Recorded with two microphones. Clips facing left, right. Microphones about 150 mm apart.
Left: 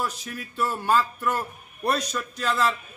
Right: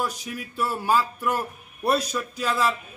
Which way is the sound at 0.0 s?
10° right (ahead or behind).